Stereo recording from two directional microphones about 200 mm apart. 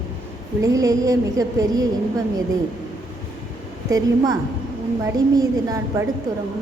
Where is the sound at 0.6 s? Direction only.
15° right (ahead or behind).